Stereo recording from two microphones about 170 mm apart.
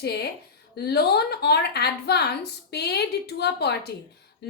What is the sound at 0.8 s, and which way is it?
A woman's voice, 70° left (ahead or behind).